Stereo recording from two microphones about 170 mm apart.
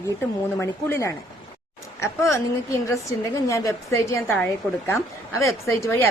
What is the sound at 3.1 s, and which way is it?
A woman's voice, 20° left (ahead or behind).